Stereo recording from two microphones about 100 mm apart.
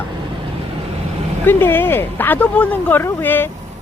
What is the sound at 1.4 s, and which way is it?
Speech, 20° left (ahead or behind).